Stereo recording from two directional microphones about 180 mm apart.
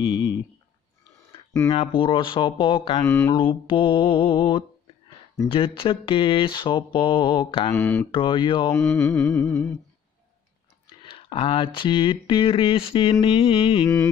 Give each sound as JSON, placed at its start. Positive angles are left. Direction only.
{"t": 0.0, "sound": "a sound", "side_deg": 25}
{"t": 1.7, "sound": "speech", "side_deg": 30}
{"t": 3.1, "sound": "humming", "side_deg": 15}
{"t": 3.3, "sound": "speech", "side_deg": 30}
{"t": 7.7, "sound": "humming", "side_deg": 10}
{"t": 8.1, "sound": "speech", "side_deg": 25}
{"t": 8.8, "sound": "music", "side_deg": 5}
{"t": 9.3, "sound": "humming", "side_deg": 15}
{"t": 11.0, "sound": "speech", "side_deg": 30}